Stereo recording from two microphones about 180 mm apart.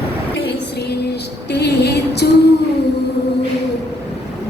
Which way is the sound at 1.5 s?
65° left (ahead or behind).